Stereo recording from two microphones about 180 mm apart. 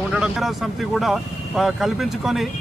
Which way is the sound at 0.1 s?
5° right (ahead or behind).